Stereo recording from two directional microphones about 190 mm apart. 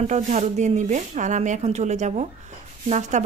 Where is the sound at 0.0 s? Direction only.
40° right (ahead or behind).